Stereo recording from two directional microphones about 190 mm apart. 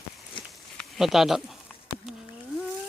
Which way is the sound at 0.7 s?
Centre (ahead or behind).